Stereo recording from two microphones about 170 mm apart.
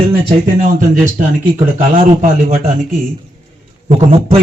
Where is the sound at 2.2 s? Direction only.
50° right (ahead or behind).